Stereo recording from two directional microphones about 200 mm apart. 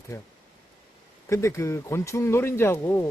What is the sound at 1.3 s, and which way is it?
Speech, 15° left (ahead or behind).